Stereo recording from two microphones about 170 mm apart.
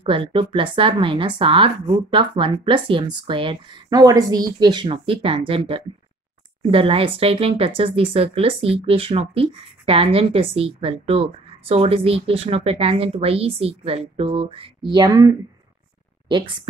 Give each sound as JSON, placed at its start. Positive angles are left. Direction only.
{"t": 0.0, "sound": "speech", "side_deg": -30}
{"t": 14.9, "sound": "speech", "side_deg": -20}